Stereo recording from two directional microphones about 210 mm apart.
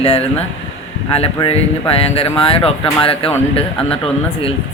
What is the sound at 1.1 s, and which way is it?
Speech, 30° left (ahead or behind).